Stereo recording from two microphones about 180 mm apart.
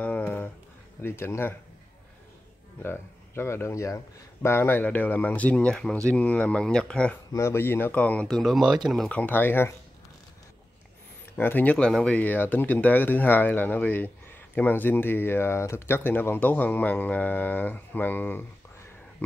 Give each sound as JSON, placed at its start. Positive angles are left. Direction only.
{"t": 0.0, "sound": "a sound", "side_deg": 10}
{"t": 1.0, "sound": "speech", "side_deg": 15}
{"t": 2.8, "sound": "speech", "side_deg": 15}
{"t": 11.3, "sound": "speech", "side_deg": 10}